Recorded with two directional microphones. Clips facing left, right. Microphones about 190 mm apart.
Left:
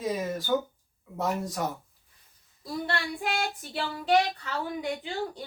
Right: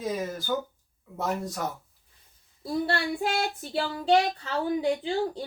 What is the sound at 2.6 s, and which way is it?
Child singing, 35° right (ahead or behind).